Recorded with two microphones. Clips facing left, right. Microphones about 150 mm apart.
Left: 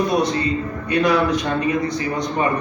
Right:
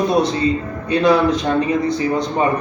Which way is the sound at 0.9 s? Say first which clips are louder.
Right 3 dB; 30° right (ahead or behind).